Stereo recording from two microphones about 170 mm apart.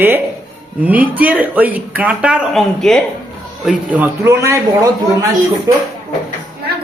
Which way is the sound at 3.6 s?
10° right (ahead or behind).